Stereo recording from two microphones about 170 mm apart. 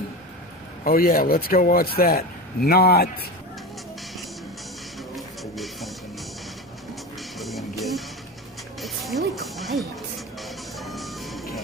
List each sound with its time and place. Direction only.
0.8 s speech: 60° left (ahead or behind)
5.1 s music: centre (ahead or behind)
7.3 s music: centre (ahead or behind)
10.8 s reversing beeps: centre (ahead or behind)